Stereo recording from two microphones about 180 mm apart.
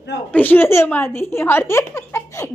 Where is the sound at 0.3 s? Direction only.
10° left (ahead or behind).